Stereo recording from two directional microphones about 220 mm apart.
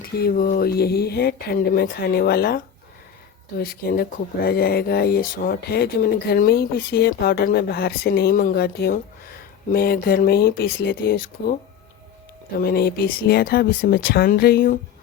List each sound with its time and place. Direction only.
0.0 s speech: 45° left (ahead or behind)
3.6 s speech: 40° left (ahead or behind)
12.5 s speech: 45° left (ahead or behind)